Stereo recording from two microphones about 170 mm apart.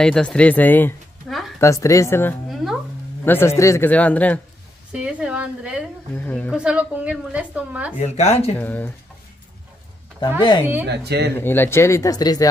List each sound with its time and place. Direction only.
0.0 s speech: 5° left (ahead or behind)
1.3 s a sound: centre (ahead or behind)
1.6 s speech: 20° left (ahead or behind)
2.5 s a sound: centre (ahead or behind)
3.3 s speech: 15° left (ahead or behind)
4.9 s speech: 5° right (ahead or behind)
6.1 s speech: 10° left (ahead or behind)
6.5 s a woman's voice: 5° right (ahead or behind)
8.0 s speech: 40° left (ahead or behind)
8.5 s speech: 10° left (ahead or behind)
10.9 s speech: 75° right (ahead or behind)
11.3 s speech: 15° left (ahead or behind)